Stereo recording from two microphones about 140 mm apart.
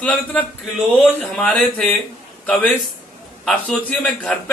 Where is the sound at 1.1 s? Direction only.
10° left (ahead or behind).